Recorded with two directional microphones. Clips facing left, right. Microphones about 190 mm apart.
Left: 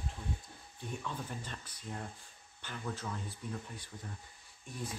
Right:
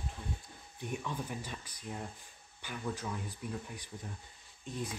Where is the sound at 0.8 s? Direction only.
15° right (ahead or behind).